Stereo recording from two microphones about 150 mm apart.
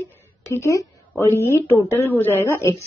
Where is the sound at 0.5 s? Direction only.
20° left (ahead or behind).